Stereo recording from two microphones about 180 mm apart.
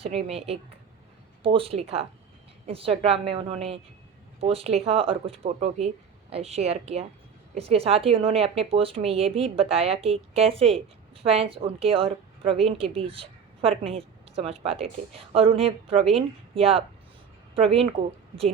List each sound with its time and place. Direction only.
0.0 s a woman's voice: 35° right (ahead or behind)